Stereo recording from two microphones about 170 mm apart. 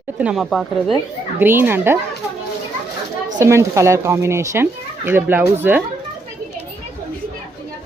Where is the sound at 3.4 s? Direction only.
15° right (ahead or behind).